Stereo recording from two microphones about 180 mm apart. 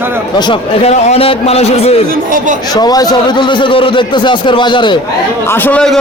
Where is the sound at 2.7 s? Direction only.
20° left (ahead or behind).